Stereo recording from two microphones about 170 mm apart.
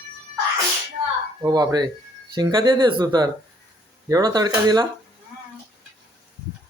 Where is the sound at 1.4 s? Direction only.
25° right (ahead or behind).